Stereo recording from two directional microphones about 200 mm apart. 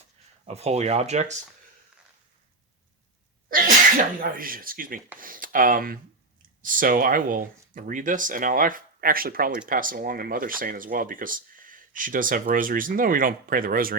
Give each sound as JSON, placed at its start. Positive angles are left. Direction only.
{"t": 0.4, "sound": "speech", "side_deg": -30}
{"t": 3.5, "sound": "speech", "side_deg": -45}